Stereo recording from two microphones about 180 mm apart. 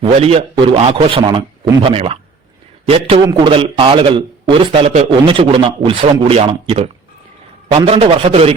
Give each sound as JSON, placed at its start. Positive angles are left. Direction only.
{"t": 0.0, "sound": "a man's voice", "side_deg": -35}